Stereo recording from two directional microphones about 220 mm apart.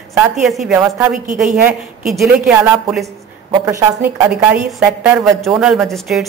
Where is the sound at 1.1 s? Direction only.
35° right (ahead or behind).